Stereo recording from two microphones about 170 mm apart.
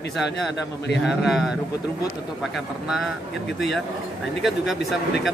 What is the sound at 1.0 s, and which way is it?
Speech, centre (ahead or behind).